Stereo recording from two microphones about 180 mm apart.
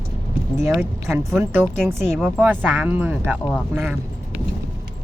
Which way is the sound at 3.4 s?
5° left (ahead or behind).